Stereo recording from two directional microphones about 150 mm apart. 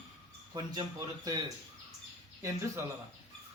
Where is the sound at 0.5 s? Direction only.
25° right (ahead or behind).